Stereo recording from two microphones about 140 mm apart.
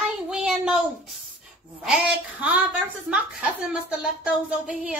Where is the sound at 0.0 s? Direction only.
5° right (ahead or behind).